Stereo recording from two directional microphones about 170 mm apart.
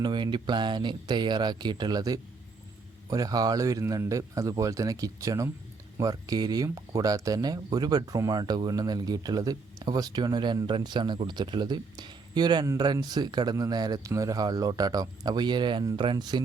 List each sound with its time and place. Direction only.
0.0 s speech: 25° right (ahead or behind)